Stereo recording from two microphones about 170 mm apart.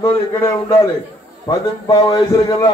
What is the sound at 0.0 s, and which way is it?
A man's voice, 20° left (ahead or behind).